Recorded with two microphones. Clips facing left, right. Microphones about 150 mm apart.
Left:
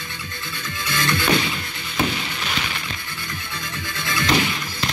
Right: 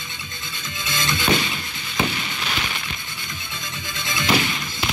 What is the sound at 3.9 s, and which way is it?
Music, 20° right (ahead or behind).